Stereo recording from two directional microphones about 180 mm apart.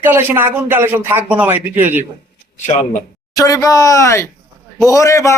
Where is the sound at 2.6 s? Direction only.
40° left (ahead or behind).